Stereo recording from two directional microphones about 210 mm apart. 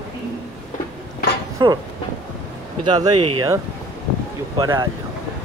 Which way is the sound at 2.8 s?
20° right (ahead or behind).